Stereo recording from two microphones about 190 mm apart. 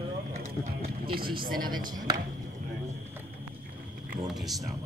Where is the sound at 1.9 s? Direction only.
20° right (ahead or behind).